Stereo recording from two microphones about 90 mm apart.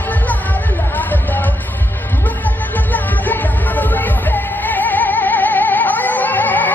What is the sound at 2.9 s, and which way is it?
Music, 20° left (ahead or behind).